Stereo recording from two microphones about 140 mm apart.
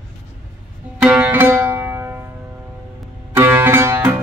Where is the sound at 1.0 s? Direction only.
10° right (ahead or behind).